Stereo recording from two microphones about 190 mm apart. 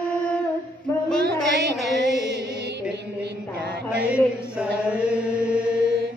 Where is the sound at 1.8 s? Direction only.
Centre (ahead or behind).